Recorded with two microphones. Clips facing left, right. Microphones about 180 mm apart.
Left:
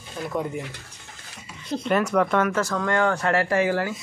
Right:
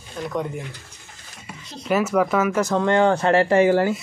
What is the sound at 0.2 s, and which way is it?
Speech, 5° left (ahead or behind).